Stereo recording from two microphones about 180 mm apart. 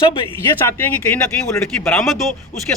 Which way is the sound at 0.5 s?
10° left (ahead or behind).